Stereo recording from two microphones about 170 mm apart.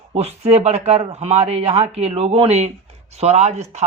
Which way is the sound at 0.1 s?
40° right (ahead or behind).